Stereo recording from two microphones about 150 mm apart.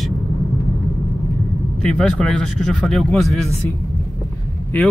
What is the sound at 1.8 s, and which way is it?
Speech, 5° left (ahead or behind).